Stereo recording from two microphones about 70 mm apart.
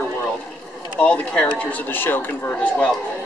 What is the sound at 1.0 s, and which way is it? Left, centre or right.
Speech, centre.